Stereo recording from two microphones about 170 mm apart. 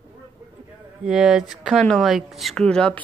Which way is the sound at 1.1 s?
5° right (ahead or behind).